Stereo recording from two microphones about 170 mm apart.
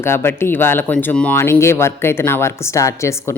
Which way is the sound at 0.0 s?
15° left (ahead or behind).